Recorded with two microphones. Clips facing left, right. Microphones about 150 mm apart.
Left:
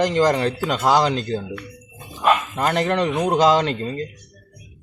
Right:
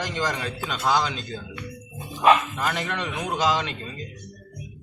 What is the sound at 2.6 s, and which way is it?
Speech, 55° left (ahead or behind).